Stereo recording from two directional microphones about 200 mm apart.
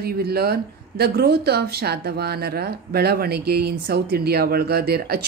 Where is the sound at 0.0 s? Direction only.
50° right (ahead or behind).